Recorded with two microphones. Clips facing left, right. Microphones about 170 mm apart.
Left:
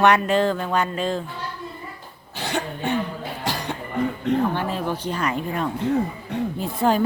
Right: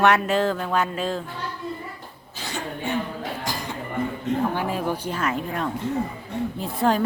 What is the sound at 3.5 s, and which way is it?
Music, 65° left (ahead or behind).